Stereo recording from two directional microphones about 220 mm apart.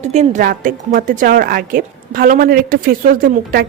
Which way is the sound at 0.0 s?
30° right (ahead or behind).